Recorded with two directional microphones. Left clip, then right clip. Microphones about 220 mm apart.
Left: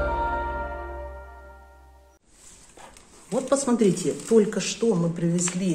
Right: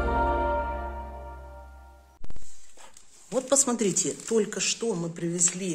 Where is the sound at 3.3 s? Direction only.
55° right (ahead or behind).